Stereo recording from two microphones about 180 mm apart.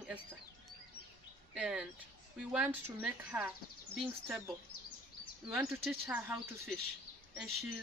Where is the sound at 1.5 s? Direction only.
5° right (ahead or behind).